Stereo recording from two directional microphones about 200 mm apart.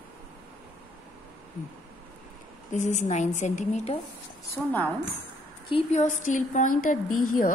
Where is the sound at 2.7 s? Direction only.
35° left (ahead or behind).